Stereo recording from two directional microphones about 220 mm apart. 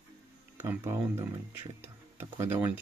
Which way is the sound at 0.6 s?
10° right (ahead or behind).